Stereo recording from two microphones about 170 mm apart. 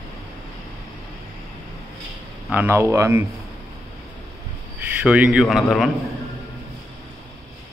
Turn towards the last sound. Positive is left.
turn(degrees=0)  # may be behind; listen again after turning